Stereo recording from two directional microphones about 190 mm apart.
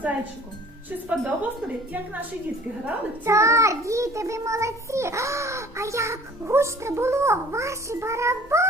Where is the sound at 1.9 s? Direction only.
10° right (ahead or behind).